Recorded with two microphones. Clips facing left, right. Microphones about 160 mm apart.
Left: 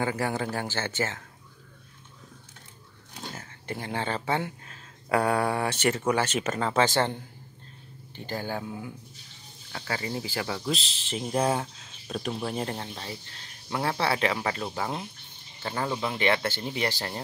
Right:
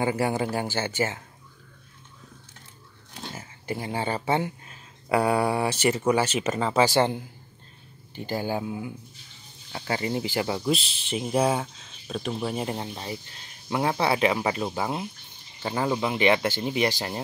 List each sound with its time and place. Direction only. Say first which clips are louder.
0.0 s speech: right 3 dB; 15° right (ahead or behind)
3.3 s speech: right 5 dB; 10° right (ahead or behind)
11.1 s speech: right 2 dB; 5° right (ahead or behind)